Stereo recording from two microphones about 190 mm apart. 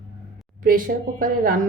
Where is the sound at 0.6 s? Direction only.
50° right (ahead or behind).